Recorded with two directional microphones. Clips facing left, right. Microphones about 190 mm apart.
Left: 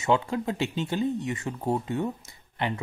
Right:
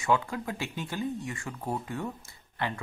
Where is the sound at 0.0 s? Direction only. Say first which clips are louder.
Left 3 dB; 25° left (ahead or behind).